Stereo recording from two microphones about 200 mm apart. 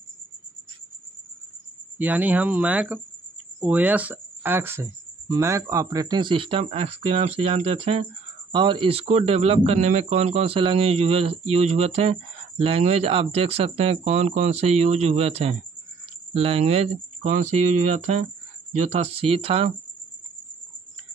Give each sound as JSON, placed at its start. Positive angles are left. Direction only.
{"t": 2.0, "sound": "speech", "side_deg": -5}